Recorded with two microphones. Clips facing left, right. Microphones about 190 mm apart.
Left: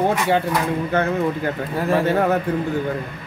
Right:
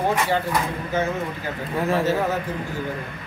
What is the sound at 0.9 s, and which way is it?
Speech, 60° left (ahead or behind).